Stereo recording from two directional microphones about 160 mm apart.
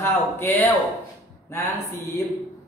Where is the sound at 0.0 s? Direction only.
15° left (ahead or behind).